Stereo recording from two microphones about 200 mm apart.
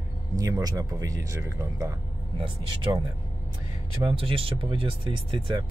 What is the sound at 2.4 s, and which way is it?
Speech, 25° right (ahead or behind).